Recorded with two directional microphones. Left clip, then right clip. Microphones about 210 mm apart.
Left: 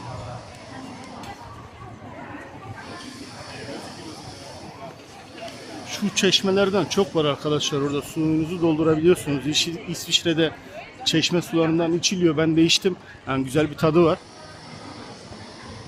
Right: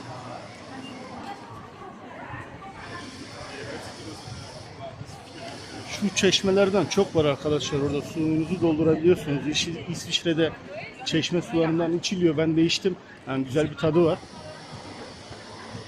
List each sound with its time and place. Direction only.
5.9 s speech: 10° left (ahead or behind); by 14.2 s 25° left (ahead or behind)